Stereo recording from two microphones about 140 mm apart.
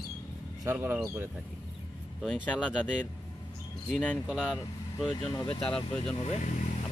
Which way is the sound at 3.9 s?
10° left (ahead or behind).